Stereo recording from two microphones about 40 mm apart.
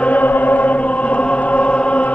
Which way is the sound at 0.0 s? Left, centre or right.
Left.